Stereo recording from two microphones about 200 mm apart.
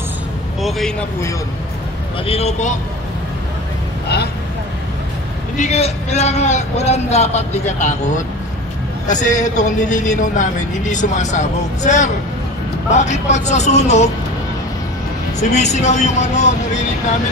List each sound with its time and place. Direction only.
0.6 s speech: centre (ahead or behind)
2.2 s a man's voice: 30° left (ahead or behind)
5.6 s a man's voice: 35° left (ahead or behind)
9.0 s a man's voice: 40° left (ahead or behind)
15.5 s a man's voice: 35° left (ahead or behind)